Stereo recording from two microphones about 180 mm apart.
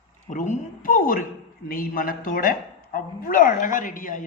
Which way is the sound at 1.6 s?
50° left (ahead or behind).